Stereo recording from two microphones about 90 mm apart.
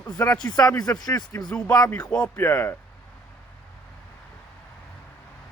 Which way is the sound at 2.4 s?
25° left (ahead or behind).